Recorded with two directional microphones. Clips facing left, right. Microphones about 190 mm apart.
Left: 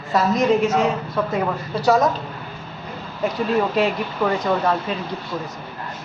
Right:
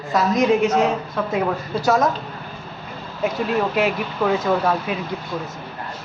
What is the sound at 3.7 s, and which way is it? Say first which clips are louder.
Speech: even; 5° right (ahead or behind).